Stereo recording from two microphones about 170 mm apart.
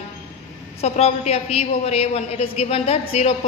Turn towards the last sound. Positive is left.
turn(degrees=40)  # may be behind; listen again after turning